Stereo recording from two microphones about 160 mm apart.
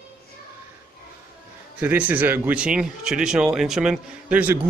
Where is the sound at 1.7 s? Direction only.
10° right (ahead or behind).